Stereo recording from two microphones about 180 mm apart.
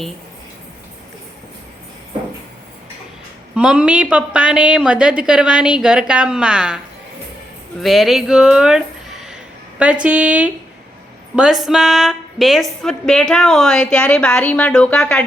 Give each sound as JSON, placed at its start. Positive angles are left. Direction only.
{"t": 3.5, "sound": "a woman's voice", "side_deg": -5}
{"t": 7.8, "sound": "a woman's voice", "side_deg": 0}